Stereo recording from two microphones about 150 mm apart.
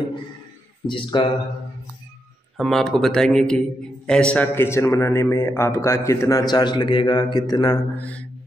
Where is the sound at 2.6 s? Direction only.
Centre (ahead or behind); by 7.8 s 25° left (ahead or behind).